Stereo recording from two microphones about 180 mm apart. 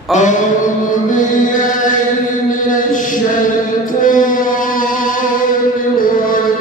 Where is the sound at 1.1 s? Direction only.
45° left (ahead or behind).